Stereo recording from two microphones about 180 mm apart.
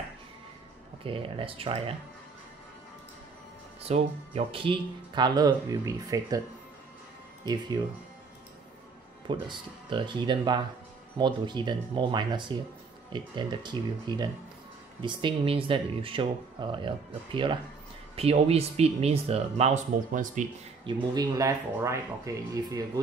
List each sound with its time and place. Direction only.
1.0 s speech: 30° right (ahead or behind)
3.8 s speech: 35° right (ahead or behind)
9.3 s speech: 25° right (ahead or behind); by 20.4 s 40° right (ahead or behind)
20.8 s speech: 20° right (ahead or behind)